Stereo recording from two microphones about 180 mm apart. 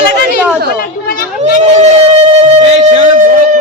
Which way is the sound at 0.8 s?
50° left (ahead or behind).